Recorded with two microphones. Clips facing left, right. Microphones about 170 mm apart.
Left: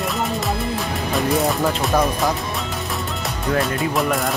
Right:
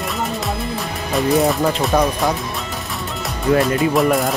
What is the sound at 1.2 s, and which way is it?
Speech, centre (ahead or behind).